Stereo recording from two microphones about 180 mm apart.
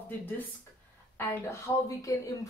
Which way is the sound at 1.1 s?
15° left (ahead or behind).